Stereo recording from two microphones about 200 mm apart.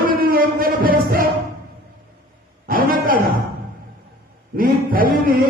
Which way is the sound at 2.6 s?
45° right (ahead or behind).